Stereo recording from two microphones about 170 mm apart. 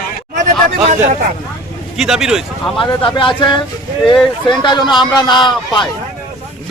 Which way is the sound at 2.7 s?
30° left (ahead or behind).